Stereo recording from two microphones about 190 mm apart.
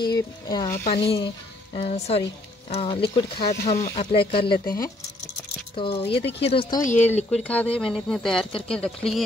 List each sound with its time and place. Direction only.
0.0 s speech: 20° left (ahead or behind)
0.8 s speech: 30° left (ahead or behind)
5.8 s speech: 30° left (ahead or behind)
7.2 s speech: 5° left (ahead or behind)